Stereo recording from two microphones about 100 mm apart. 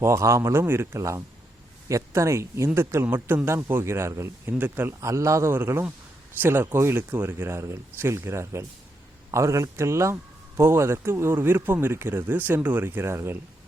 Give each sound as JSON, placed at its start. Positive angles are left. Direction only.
{"t": 0.0, "sound": "speech", "side_deg": -30}